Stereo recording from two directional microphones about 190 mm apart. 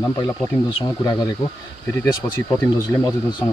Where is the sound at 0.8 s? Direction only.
20° left (ahead or behind).